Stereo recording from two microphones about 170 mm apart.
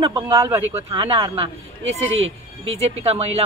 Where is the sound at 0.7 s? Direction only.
30° right (ahead or behind).